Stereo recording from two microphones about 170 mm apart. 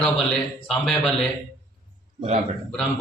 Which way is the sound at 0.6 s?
5° left (ahead or behind).